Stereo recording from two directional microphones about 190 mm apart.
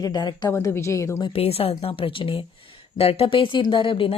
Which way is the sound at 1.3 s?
30° left (ahead or behind).